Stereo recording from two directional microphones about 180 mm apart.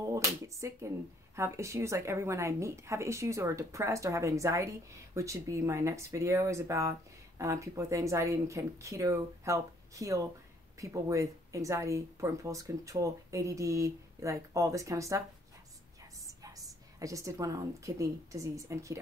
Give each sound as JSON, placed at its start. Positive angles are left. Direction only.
{"t": 0.0, "sound": "speech", "side_deg": -20}
{"t": 16.3, "sound": "a woman's voice", "side_deg": -20}